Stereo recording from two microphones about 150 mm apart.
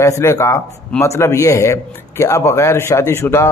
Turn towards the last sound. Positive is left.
turn(degrees=15)  # may be behind; listen again after turning